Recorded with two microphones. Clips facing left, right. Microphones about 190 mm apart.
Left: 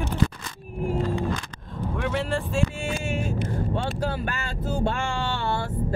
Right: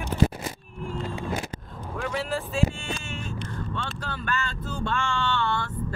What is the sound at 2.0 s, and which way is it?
Speech, centre (ahead or behind).